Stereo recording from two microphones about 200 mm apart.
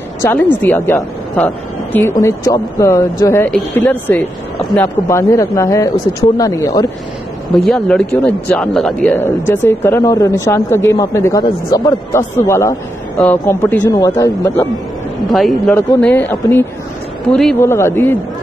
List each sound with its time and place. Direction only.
0.6 s speech: 10° left (ahead or behind)
7.5 s speech: centre (ahead or behind)
15.3 s speech: centre (ahead or behind)